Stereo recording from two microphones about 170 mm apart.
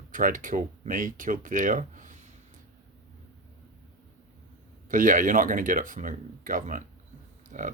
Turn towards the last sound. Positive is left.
turn(degrees=-50)  # may be behind; listen again after turning